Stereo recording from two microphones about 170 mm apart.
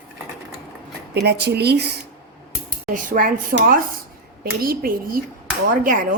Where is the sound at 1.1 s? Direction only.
75° right (ahead or behind).